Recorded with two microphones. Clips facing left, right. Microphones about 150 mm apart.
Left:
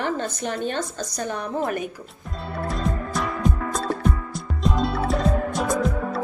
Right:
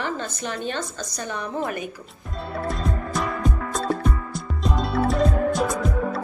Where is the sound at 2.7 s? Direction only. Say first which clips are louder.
Left 2 dB; centre (ahead or behind).